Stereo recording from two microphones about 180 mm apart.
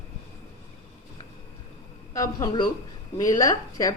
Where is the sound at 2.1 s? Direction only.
20° left (ahead or behind).